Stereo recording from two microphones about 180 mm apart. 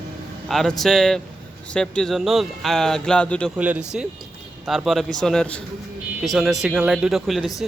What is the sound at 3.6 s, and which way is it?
A man's voice, 5° right (ahead or behind).